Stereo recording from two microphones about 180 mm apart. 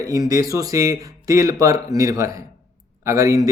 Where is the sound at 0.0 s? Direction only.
20° right (ahead or behind).